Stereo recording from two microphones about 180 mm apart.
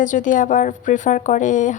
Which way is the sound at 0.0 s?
45° left (ahead or behind).